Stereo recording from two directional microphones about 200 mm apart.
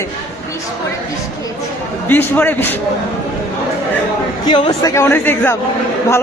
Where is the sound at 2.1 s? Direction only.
10° left (ahead or behind).